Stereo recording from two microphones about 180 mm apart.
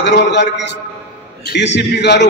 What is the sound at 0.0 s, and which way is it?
A man's voice, 70° left (ahead or behind).